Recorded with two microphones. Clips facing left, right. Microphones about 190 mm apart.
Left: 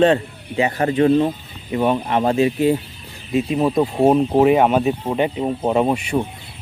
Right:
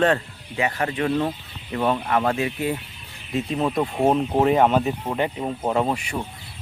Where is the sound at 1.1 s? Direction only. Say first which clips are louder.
Left 6 dB; 15° left (ahead or behind).